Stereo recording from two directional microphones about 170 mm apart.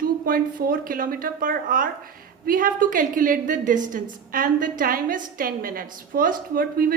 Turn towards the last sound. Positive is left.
turn(degrees=-60)  # may be behind; listen again after turning